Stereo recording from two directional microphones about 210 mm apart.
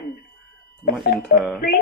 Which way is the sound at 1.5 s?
50° left (ahead or behind).